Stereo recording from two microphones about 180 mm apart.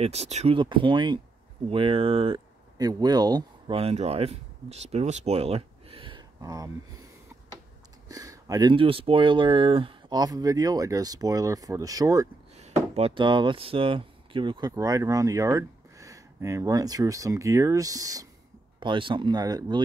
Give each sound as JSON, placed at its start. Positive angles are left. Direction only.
{"t": 0.0, "sound": "speech", "side_deg": -35}
{"t": 8.1, "sound": "speech", "side_deg": -20}
{"t": 12.5, "sound": "speech", "side_deg": -35}